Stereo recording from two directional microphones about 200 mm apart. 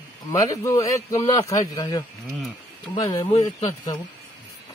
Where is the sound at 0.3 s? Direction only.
15° left (ahead or behind).